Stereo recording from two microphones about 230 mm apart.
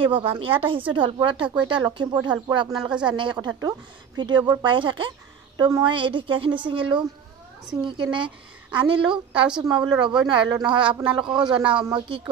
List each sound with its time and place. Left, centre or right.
0.0 s a woman's voice: right
2.7 s speech: centre
3.1 s a woman's voice: right